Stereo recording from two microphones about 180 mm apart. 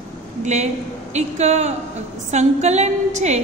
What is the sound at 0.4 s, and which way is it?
A woman's voice, 40° right (ahead or behind).